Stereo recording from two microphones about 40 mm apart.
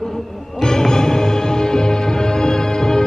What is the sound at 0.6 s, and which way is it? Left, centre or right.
Music, centre.